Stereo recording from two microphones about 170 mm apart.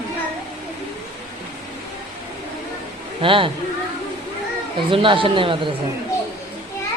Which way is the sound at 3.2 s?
30° right (ahead or behind).